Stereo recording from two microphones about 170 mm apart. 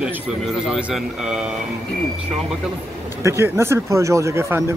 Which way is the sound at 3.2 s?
15° right (ahead or behind).